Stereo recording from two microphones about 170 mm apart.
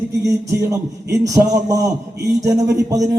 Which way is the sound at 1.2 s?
20° right (ahead or behind).